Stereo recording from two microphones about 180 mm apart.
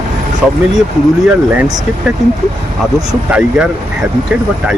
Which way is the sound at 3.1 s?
5° right (ahead or behind).